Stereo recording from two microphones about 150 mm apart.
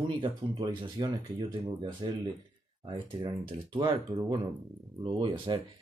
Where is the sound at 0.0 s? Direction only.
30° right (ahead or behind).